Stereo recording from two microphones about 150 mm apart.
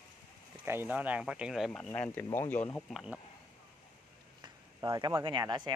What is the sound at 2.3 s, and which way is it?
Speech, 10° left (ahead or behind).